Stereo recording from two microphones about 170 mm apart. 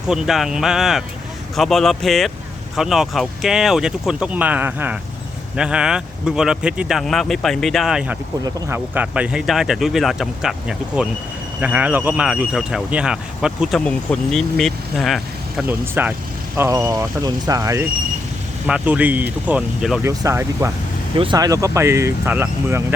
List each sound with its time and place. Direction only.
0.1 s a man's voice: centre (ahead or behind)
15.6 s speech: 10° right (ahead or behind)
18.6 s speech: 5° right (ahead or behind)
20.0 s speech: 15° right (ahead or behind)